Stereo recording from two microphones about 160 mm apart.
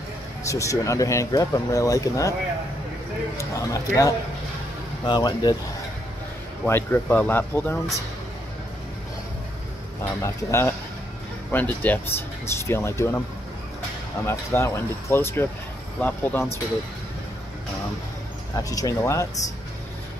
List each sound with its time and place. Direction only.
0.5 s speech: 20° left (ahead or behind)
3.3 s speech: 20° left (ahead or behind)
6.6 s speech: 10° left (ahead or behind)
10.2 s speech: 15° left (ahead or behind)
14.2 s speech: 15° left (ahead or behind)
18.6 s speech: 20° left (ahead or behind)